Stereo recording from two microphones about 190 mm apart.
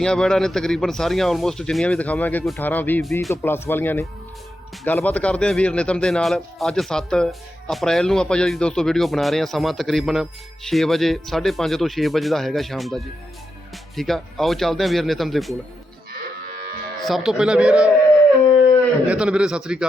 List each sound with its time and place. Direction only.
0.0 s speech: 5° left (ahead or behind)
16.5 s livestock: 50° right (ahead or behind)
17.0 s speech: centre (ahead or behind)
19.0 s speech: 5° right (ahead or behind)